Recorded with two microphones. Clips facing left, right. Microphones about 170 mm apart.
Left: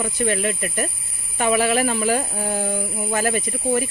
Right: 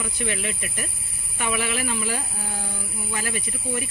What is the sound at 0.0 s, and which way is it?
Speech, 45° left (ahead or behind).